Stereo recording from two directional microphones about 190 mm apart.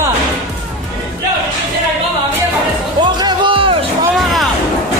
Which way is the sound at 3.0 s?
25° right (ahead or behind).